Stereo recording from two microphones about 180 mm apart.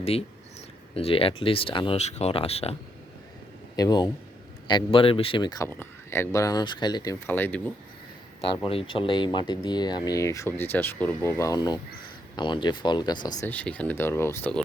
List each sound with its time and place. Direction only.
0.0 s speech: 35° left (ahead or behind)
3.8 s speech: 20° left (ahead or behind)
8.4 s speech: 30° left (ahead or behind)
13.5 s speech: 5° left (ahead or behind)